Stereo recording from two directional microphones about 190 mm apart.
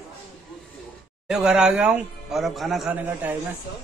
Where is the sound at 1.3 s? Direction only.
5° right (ahead or behind).